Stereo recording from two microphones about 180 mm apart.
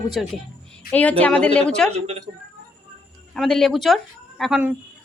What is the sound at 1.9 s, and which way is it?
Speech, 35° right (ahead or behind).